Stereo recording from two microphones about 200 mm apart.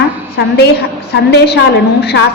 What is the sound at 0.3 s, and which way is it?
A woman's voice, 55° left (ahead or behind).